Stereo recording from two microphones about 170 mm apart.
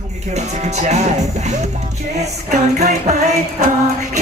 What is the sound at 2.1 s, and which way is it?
Music, 40° right (ahead or behind).